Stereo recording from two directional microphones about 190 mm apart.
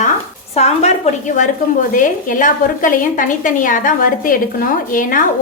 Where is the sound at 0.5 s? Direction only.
35° left (ahead or behind).